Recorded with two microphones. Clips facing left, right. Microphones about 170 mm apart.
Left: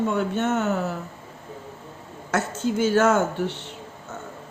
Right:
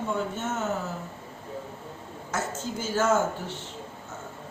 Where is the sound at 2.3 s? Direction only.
65° left (ahead or behind).